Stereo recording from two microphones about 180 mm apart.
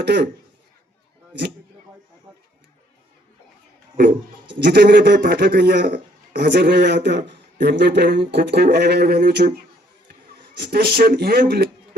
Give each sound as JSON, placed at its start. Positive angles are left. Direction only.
{"t": 0.0, "sound": "a man's voice", "side_deg": -70}
{"t": 3.9, "sound": "a man's voice", "side_deg": -55}
{"t": 10.6, "sound": "speech", "side_deg": -60}